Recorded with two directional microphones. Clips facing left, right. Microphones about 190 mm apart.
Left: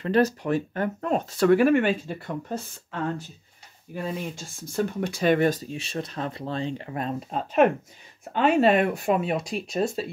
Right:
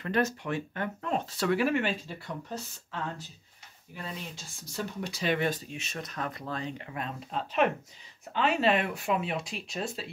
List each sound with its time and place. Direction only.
0.0 s speech: 35° left (ahead or behind)